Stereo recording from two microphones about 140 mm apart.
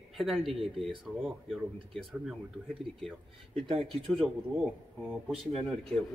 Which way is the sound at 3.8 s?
Centre (ahead or behind).